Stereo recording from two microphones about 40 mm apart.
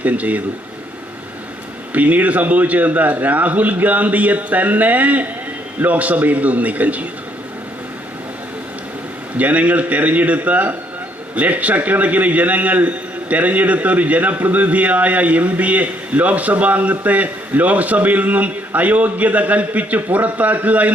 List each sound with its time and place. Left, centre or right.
0.0 s a man's voice: right
1.9 s a man's voice: right
9.4 s a man's voice: right